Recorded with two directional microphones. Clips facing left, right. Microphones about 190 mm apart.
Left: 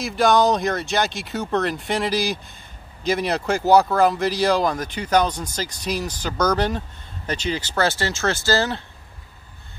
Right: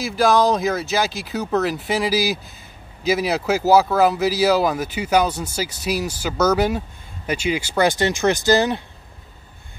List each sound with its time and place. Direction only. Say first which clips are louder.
0.0 s speech: right 1 dB; centre (ahead or behind); by 8.8 s 15° right (ahead or behind)